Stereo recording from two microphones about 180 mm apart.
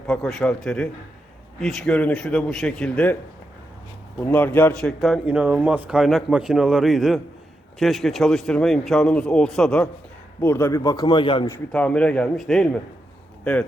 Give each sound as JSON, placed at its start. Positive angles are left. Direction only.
{"t": 0.1, "sound": "a man's voice", "side_deg": 5}
{"t": 4.2, "sound": "a man's voice", "side_deg": 10}
{"t": 11.7, "sound": "a man's voice", "side_deg": 5}